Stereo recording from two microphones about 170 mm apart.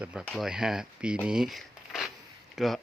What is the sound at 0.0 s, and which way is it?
Speech, 10° right (ahead or behind).